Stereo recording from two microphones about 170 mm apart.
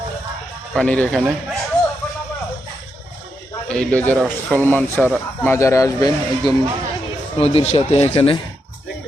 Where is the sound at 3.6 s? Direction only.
5° left (ahead or behind).